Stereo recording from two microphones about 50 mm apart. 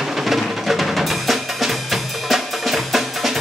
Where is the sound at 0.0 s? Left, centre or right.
Centre.